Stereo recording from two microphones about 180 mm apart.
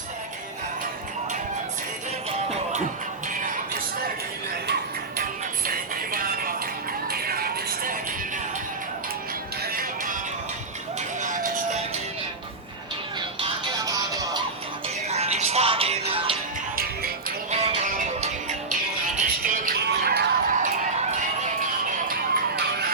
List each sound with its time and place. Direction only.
4.6 s music: 65° right (ahead or behind)
9.7 s music: 50° right (ahead or behind)
11.2 s music: 45° right (ahead or behind)
13.4 s music: 20° right (ahead or behind)
15.1 s music: 35° right (ahead or behind)
17.5 s music: 35° right (ahead or behind); by 20.6 s 60° right (ahead or behind)
20.6 s music: 40° right (ahead or behind)